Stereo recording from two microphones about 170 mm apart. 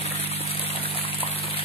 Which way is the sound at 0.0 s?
35° left (ahead or behind).